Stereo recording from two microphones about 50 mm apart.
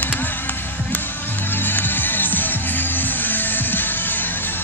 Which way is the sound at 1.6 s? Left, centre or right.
Left.